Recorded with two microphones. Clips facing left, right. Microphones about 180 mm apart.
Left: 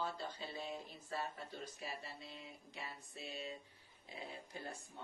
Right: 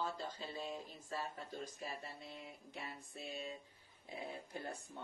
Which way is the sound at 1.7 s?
50° right (ahead or behind).